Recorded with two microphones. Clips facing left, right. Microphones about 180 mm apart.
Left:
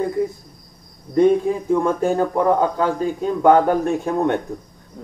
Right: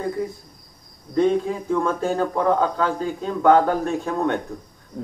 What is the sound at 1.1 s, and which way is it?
Speech, 15° left (ahead or behind).